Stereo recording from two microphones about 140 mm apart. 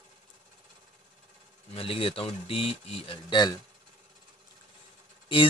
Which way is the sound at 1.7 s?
40° left (ahead or behind).